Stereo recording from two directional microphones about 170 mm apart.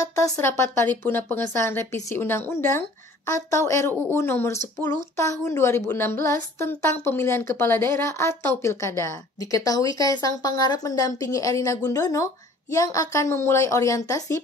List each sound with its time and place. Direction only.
0.0 s a woman's voice: 20° left (ahead or behind)